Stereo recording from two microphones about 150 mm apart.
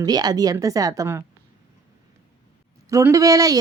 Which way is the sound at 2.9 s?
20° right (ahead or behind).